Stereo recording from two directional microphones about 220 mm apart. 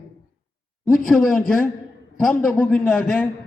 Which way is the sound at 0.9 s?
Centre (ahead or behind).